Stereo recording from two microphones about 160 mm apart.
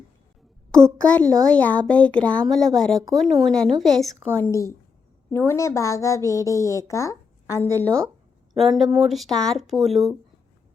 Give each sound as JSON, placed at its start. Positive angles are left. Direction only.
{"t": 0.9, "sound": "speech", "side_deg": 5}
{"t": 4.4, "sound": "a woman's voice", "side_deg": 20}
{"t": 8.5, "sound": "speech", "side_deg": 0}